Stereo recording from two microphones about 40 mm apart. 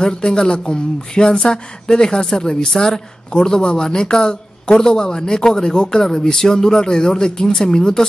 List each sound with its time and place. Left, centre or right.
0.0 s speech: left